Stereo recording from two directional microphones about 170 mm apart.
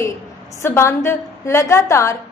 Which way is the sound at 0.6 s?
15° left (ahead or behind).